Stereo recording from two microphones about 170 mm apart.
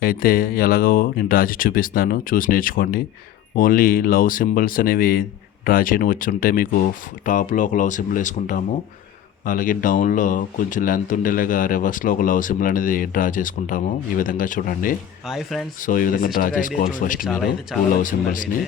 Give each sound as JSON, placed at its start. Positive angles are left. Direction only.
{"t": 0.0, "sound": "speech", "side_deg": 60}
{"t": 15.3, "sound": "speech", "side_deg": 0}
{"t": 15.8, "sound": "speech", "side_deg": 55}